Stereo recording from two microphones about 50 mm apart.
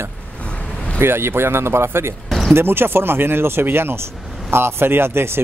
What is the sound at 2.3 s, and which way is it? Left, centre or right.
Music, centre.